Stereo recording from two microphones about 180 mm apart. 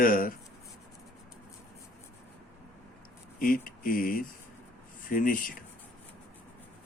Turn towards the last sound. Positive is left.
turn(degrees=50)  # may be behind; listen again after turning